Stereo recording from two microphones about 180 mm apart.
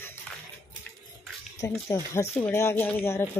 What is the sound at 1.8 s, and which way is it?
Speech, 15° left (ahead or behind).